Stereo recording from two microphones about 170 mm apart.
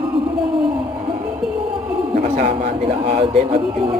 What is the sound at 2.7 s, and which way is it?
Speech, 45° right (ahead or behind).